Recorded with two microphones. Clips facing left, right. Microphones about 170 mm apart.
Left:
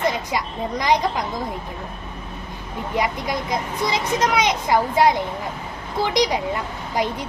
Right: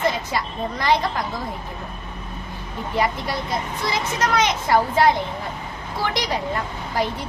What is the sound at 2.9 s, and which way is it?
A woman's voice, 15° left (ahead or behind).